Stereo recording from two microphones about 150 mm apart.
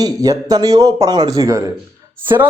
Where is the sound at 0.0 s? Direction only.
25° right (ahead or behind).